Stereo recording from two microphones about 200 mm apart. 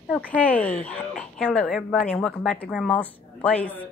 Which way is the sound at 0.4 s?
5° left (ahead or behind).